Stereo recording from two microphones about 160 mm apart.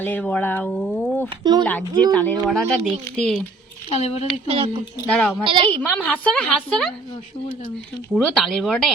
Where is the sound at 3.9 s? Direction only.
40° left (ahead or behind).